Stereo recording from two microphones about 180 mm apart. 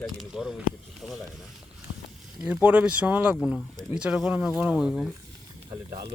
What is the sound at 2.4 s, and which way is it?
Speech, 10° right (ahead or behind).